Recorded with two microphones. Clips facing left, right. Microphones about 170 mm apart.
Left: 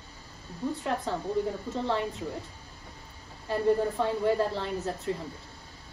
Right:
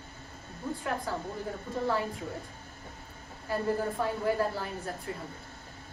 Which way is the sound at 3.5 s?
25° left (ahead or behind).